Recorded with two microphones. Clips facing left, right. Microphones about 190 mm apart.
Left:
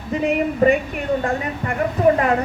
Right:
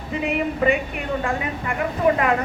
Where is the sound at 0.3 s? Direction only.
40° left (ahead or behind).